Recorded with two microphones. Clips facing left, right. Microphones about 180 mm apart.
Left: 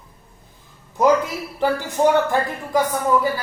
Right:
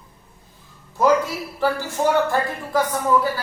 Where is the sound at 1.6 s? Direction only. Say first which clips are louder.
Left 3 dB; 15° left (ahead or behind).